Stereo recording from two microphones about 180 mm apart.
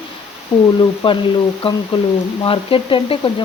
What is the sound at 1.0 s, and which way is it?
Speech, 30° left (ahead or behind).